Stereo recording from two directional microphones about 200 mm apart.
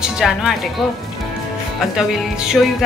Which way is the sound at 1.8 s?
5° right (ahead or behind).